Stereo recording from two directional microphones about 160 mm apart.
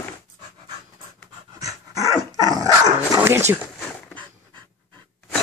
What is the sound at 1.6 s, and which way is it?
Dog, 20° right (ahead or behind).